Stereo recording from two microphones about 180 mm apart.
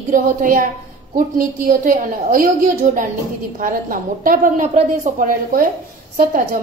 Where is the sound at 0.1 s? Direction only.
50° right (ahead or behind).